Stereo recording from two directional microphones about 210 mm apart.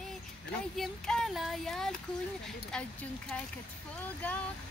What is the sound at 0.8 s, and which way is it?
Speech, centre (ahead or behind).